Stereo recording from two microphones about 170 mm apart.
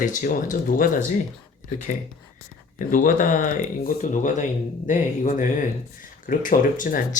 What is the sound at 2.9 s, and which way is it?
Speech, 50° left (ahead or behind).